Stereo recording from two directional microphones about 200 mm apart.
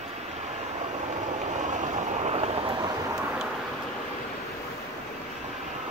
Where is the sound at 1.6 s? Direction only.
35° right (ahead or behind).